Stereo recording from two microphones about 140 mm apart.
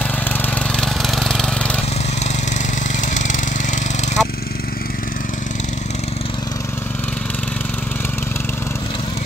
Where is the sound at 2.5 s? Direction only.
60° left (ahead or behind).